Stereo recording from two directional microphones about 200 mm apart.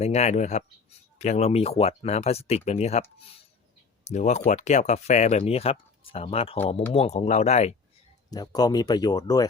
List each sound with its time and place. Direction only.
0.0 s speech: 35° left (ahead or behind)
4.0 s speech: 35° left (ahead or behind)
8.3 s speech: 20° left (ahead or behind)